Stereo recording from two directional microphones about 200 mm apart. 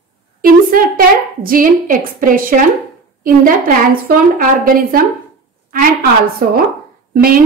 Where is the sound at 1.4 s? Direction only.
45° right (ahead or behind).